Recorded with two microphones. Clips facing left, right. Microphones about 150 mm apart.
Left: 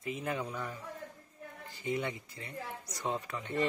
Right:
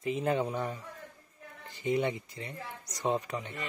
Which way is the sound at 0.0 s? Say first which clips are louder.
Right 7 dB; 30° right (ahead or behind).